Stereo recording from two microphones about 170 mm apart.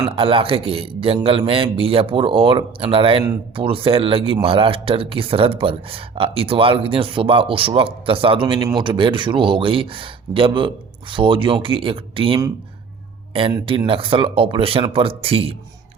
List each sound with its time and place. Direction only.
0.0 s a man's voice: 30° right (ahead or behind)
13.7 s a man's voice: 30° right (ahead or behind)